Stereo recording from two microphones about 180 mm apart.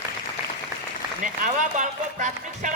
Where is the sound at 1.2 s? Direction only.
45° right (ahead or behind).